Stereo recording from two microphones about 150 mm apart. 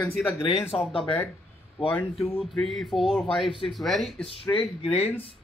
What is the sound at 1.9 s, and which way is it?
Speech, 10° left (ahead or behind).